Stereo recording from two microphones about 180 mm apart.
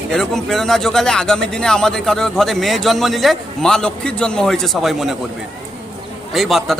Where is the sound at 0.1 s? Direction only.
Centre (ahead or behind).